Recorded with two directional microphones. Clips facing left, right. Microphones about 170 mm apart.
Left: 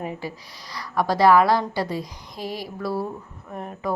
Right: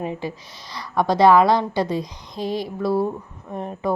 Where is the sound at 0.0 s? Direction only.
20° right (ahead or behind).